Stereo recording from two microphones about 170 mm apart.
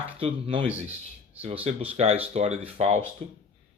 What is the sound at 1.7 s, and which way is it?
Speech, 35° right (ahead or behind).